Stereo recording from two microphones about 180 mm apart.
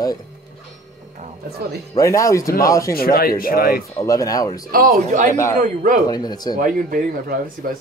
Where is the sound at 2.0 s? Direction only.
15° left (ahead or behind).